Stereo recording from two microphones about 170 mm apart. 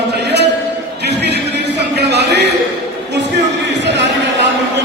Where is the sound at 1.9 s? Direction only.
80° right.